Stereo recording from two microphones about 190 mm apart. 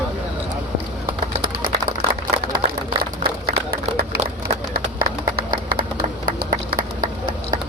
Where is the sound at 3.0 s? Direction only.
55° right (ahead or behind).